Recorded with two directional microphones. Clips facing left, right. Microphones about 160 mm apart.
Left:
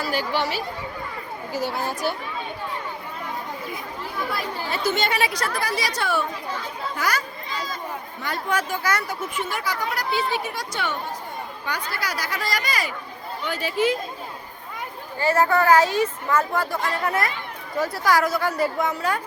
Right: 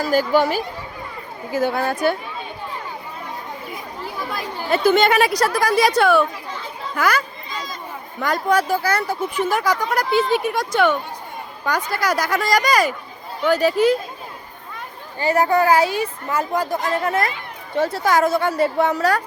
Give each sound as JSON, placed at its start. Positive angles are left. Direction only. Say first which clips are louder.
{"t": 0.0, "sound": "a woman's voice", "louder": "right 8 dB", "side_deg": -45}
{"t": 4.7, "sound": "speech", "louder": "right 9 dB", "side_deg": -55}
{"t": 8.2, "sound": "speech", "louder": "right 8 dB", "side_deg": -40}
{"t": 9.5, "sound": "speech", "louder": "right 7 dB", "side_deg": -45}
{"t": 15.2, "sound": "speech", "louder": "right 3 dB", "side_deg": -15}